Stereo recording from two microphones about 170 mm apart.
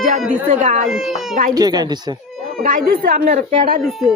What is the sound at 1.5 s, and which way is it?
Speech, 25° right (ahead or behind).